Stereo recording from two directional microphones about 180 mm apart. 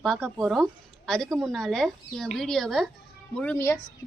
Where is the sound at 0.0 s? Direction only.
Centre (ahead or behind).